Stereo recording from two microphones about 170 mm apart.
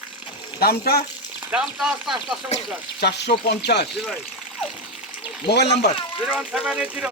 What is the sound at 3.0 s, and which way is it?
Speech, 80° left.